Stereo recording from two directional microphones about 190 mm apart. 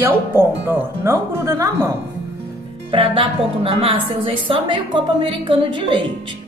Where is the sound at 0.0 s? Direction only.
10° right (ahead or behind).